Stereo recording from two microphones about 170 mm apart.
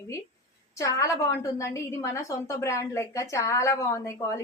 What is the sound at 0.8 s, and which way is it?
A woman's voice, 20° left (ahead or behind).